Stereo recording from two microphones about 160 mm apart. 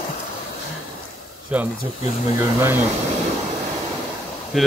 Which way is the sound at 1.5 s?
10° right (ahead or behind).